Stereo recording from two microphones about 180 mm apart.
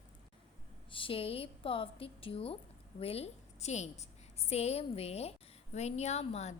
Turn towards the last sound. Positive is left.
turn(degrees=35)  # may be behind; listen again after turning